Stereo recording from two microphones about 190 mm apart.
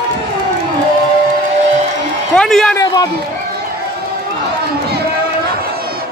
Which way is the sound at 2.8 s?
20° left (ahead or behind).